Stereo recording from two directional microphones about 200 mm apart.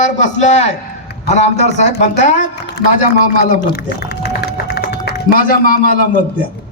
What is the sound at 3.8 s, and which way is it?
Typing, 55° left (ahead or behind).